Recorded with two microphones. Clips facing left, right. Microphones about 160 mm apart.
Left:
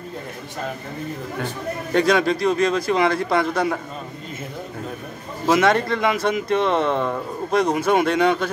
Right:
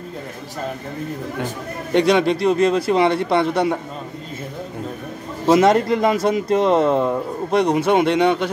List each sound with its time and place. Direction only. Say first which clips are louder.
2.0 s speech: right 3 dB; 25° right (ahead or behind)
5.5 s speech: right 4 dB; 30° right (ahead or behind)